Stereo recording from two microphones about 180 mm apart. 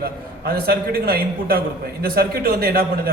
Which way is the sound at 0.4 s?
55° right (ahead or behind).